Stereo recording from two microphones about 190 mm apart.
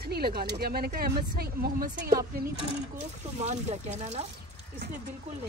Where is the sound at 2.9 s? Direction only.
35° right (ahead or behind).